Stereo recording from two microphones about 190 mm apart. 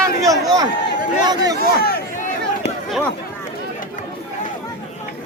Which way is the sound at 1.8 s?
50° left (ahead or behind).